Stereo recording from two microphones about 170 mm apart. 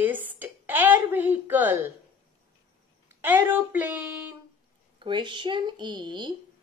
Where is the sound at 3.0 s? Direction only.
10° right (ahead or behind).